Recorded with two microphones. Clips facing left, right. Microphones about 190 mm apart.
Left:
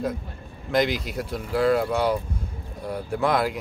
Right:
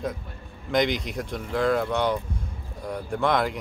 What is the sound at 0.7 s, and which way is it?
Speech, 5° left (ahead or behind).